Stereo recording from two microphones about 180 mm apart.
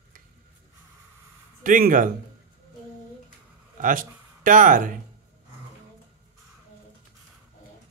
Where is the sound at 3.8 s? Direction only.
50° right (ahead or behind).